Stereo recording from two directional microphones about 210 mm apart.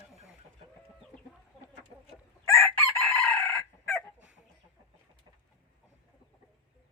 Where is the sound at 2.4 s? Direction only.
5° left (ahead or behind).